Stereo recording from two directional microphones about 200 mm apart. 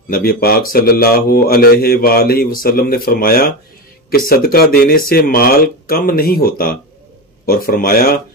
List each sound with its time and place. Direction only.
0.1 s speech: 50° left (ahead or behind)